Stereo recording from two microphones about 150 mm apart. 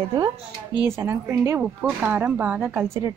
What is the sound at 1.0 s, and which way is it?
Speech, 15° right (ahead or behind).